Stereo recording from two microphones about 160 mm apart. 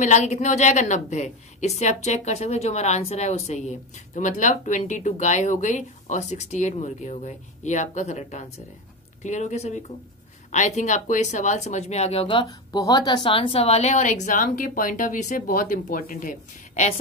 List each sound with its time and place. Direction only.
0.0 s a woman's voice: 45° left (ahead or behind)